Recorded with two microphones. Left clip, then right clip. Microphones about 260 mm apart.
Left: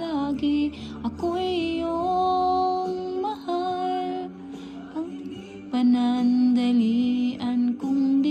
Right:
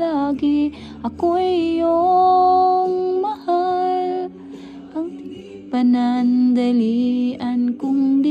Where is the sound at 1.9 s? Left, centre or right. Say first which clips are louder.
Right 9 dB; right.